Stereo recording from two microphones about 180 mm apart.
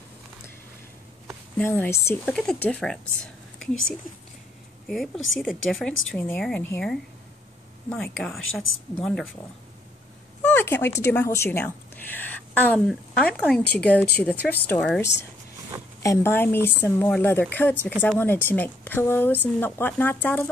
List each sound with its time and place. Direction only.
1.6 s speech: 10° left (ahead or behind)
4.8 s speech: centre (ahead or behind)
10.4 s a sound: 10° left (ahead or behind)
11.0 s a woman's voice: 15° left (ahead or behind)